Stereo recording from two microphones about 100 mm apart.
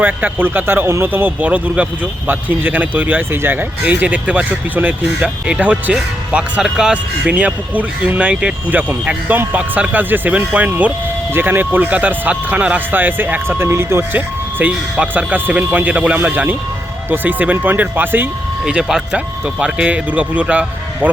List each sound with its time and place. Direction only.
0.0 s speech: 20° right (ahead or behind)
18.6 s speech: 5° right (ahead or behind)